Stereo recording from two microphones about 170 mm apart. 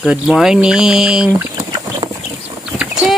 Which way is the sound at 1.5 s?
25° right (ahead or behind).